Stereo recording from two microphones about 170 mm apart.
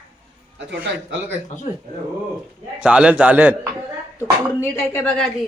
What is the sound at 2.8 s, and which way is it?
Speech, 5° right (ahead or behind).